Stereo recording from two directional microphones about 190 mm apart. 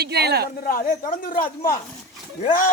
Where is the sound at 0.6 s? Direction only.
50° left (ahead or behind).